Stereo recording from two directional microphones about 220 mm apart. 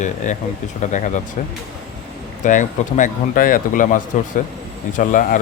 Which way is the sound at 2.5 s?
35° left (ahead or behind).